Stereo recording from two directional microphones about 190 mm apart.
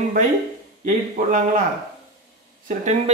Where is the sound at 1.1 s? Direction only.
45° right (ahead or behind).